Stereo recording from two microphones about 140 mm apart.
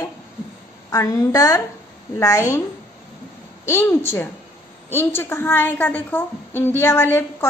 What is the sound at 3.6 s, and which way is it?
A woman's voice, 20° left (ahead or behind).